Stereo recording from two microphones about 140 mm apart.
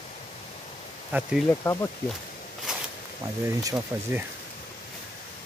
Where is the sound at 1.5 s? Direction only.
20° left (ahead or behind).